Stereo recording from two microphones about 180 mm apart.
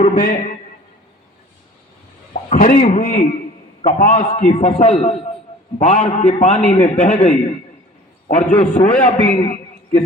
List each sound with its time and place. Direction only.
0.0 s a man's voice: 45° left (ahead or behind)
2.3 s a man's voice: 45° left (ahead or behind)